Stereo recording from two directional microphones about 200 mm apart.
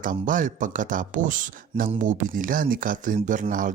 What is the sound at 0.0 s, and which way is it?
Speech, 40° right (ahead or behind).